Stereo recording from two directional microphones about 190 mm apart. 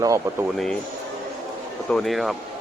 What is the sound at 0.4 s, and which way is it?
Speech, centre (ahead or behind).